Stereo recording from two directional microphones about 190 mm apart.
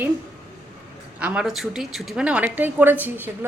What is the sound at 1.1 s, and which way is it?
A woman's voice, 5° right (ahead or behind).